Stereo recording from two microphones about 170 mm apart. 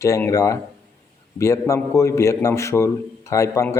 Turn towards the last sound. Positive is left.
turn(degrees=15)  # may be behind; listen again after turning